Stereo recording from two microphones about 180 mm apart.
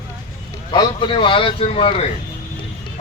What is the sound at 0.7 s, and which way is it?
A man's voice, 25° left (ahead or behind).